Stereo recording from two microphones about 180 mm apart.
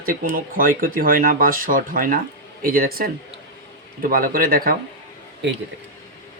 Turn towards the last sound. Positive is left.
turn(degrees=-75)  # may be behind; listen again after turning